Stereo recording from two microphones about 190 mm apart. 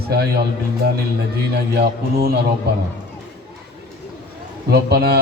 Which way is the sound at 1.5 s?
55° right (ahead or behind).